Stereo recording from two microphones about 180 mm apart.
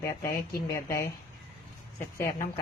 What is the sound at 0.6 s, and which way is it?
Speech, 20° left (ahead or behind).